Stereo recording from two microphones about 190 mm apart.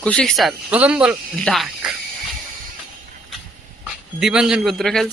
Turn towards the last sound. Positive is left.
turn(degrees=0)  # may be behind; listen again after turning